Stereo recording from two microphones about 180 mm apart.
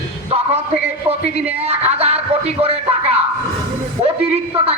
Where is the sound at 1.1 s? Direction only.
35° right (ahead or behind).